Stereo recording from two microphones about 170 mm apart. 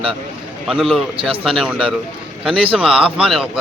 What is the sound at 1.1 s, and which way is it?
Speech, 30° right (ahead or behind).